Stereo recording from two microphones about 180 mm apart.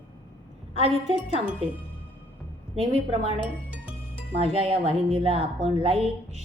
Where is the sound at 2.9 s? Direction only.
30° right (ahead or behind).